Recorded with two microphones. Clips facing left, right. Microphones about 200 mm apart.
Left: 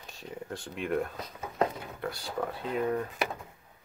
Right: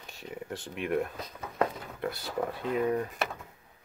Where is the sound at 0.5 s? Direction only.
5° right (ahead or behind).